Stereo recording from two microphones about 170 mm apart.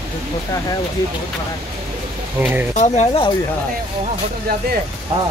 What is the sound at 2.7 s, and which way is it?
Speech, 40° left (ahead or behind).